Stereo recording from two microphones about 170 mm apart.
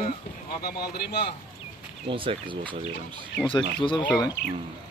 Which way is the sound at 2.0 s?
30° right (ahead or behind).